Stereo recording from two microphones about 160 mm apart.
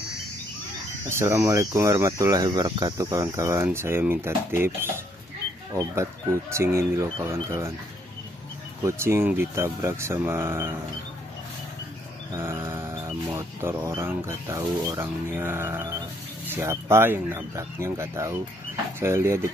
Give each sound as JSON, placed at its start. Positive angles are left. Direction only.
{"t": 1.1, "sound": "speech", "side_deg": -15}
{"t": 6.5, "sound": "speech", "side_deg": -15}
{"t": 8.8, "sound": "speech", "side_deg": -15}
{"t": 12.4, "sound": "speech", "side_deg": -15}